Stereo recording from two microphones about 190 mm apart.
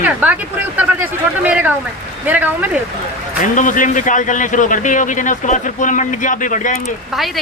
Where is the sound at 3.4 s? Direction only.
45° left (ahead or behind).